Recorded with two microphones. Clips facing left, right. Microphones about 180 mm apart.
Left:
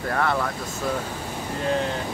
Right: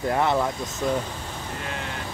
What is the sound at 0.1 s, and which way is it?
Speech, 20° right (ahead or behind).